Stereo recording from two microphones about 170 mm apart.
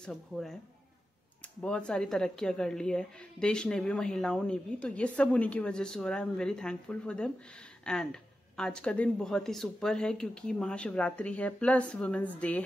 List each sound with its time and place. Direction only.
0.0 s a woman's voice: 5° left (ahead or behind)
1.6 s a woman's voice: 5° left (ahead or behind)